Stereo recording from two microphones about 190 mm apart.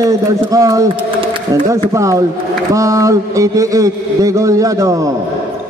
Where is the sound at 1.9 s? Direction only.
15° right (ahead or behind).